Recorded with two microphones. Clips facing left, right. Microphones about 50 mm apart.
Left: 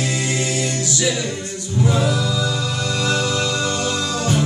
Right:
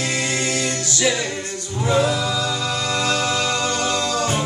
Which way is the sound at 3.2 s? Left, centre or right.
Right.